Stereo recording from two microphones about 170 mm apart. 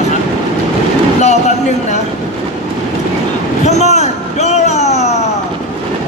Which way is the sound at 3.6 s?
40° left (ahead or behind).